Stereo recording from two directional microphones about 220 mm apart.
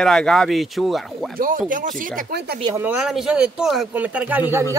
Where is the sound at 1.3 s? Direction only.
40° right (ahead or behind).